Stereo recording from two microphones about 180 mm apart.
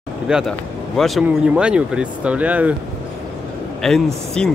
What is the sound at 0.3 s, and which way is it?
Speech, centre (ahead or behind).